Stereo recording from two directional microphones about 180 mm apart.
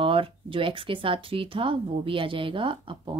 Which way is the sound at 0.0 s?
30° right (ahead or behind).